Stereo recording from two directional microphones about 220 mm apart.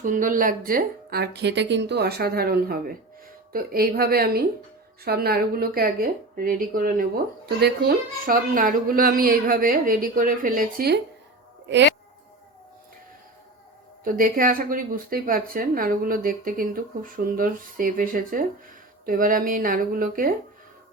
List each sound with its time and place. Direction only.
0.0 s a woman's voice: 35° right (ahead or behind)
14.0 s a woman's voice: 40° right (ahead or behind)